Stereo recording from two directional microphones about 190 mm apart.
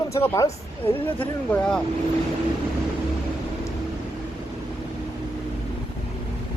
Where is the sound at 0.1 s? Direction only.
15° left (ahead or behind).